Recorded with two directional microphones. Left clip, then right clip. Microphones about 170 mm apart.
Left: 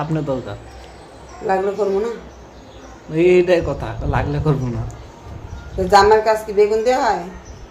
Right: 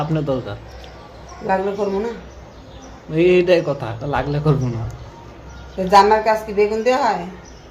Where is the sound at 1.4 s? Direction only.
20° left (ahead or behind).